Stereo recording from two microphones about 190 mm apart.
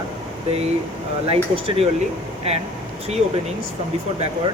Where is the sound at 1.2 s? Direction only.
30° right (ahead or behind).